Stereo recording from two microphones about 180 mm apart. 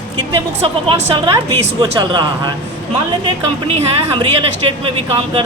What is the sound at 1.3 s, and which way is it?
A woman's voice, 20° right (ahead or behind).